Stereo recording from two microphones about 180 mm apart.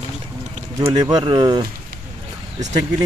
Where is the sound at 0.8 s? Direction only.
20° right (ahead or behind).